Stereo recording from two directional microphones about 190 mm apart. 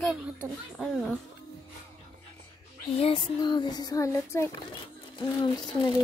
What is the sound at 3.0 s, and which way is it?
Speech, 25° left (ahead or behind).